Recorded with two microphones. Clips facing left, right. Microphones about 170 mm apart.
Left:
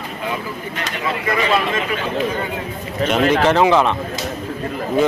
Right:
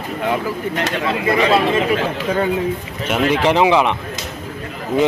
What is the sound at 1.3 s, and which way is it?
Speech, 30° right (ahead or behind).